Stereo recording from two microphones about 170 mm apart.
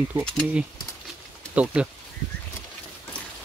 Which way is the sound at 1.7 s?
5° right (ahead or behind).